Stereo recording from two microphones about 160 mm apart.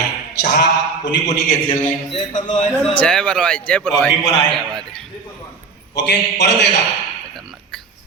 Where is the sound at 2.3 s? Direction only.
50° left (ahead or behind).